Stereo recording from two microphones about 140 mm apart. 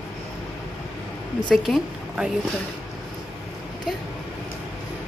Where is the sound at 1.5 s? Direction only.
Centre (ahead or behind).